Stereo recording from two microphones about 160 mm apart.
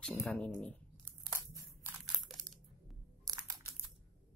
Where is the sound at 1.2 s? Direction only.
20° right (ahead or behind).